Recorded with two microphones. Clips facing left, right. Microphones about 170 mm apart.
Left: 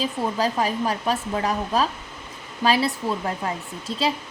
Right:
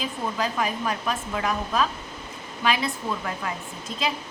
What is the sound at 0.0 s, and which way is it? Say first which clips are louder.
A woman's voice: left 4 dB; 35° left (ahead or behind).